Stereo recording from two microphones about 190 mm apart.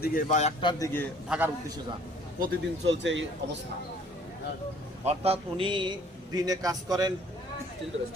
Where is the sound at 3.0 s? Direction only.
75° right (ahead or behind).